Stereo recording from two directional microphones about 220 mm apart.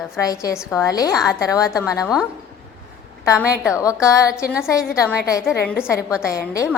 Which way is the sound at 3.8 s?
15° left (ahead or behind).